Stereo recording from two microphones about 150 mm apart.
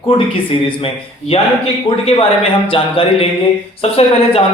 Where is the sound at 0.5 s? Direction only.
40° left (ahead or behind).